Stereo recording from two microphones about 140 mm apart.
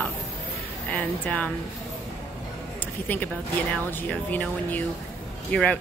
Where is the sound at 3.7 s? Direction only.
10° left (ahead or behind).